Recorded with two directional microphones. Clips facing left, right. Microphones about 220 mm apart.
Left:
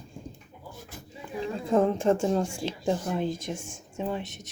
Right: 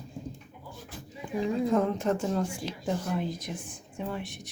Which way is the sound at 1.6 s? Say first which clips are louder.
Left 7 dB; 30° left (ahead or behind).